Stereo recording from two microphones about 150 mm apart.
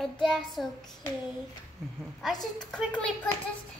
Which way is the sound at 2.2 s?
5° left (ahead or behind).